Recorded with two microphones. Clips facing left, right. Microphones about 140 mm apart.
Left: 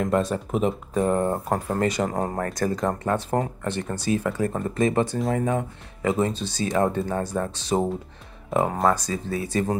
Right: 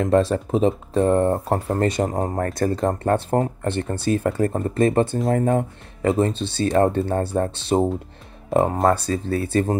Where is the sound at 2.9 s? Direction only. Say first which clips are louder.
Right 4 dB; 45° right (ahead or behind).